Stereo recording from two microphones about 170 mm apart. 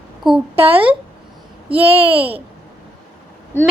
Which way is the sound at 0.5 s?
35° right (ahead or behind).